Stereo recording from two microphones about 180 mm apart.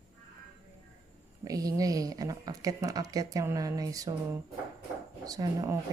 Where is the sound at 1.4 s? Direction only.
20° right (ahead or behind).